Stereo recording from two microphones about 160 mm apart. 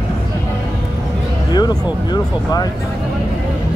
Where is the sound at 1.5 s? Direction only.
25° left (ahead or behind).